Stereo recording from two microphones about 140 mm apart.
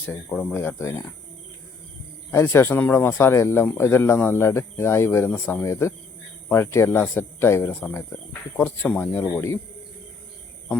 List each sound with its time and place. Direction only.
0.5 s speech: 15° left (ahead or behind)
2.3 s speech: 15° left (ahead or behind)